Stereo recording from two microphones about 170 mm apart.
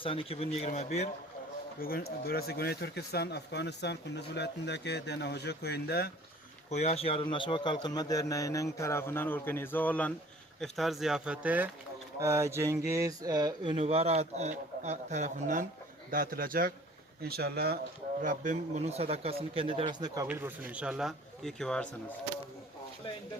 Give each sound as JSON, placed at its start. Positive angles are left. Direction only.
{"t": 0.0, "sound": "a man's voice", "side_deg": 35}
{"t": 1.8, "sound": "speech", "side_deg": 60}
{"t": 6.7, "sound": "a man's voice", "side_deg": 40}
{"t": 13.7, "sound": "a man's voice", "side_deg": -35}
{"t": 16.1, "sound": "a man's voice", "side_deg": -55}
{"t": 18.2, "sound": "a man's voice", "side_deg": -50}
{"t": 20.2, "sound": "speech", "side_deg": -10}